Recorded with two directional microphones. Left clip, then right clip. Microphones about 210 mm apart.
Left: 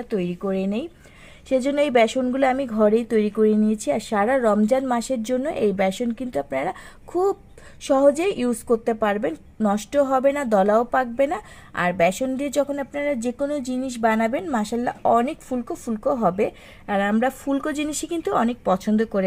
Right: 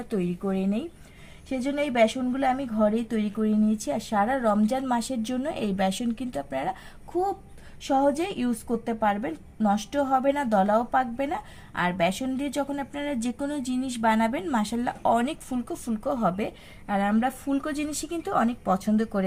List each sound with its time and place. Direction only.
0.1 s a woman's voice: 35° left (ahead or behind)
1.5 s a woman's voice: 55° left (ahead or behind)
7.9 s a woman's voice: 45° left (ahead or behind)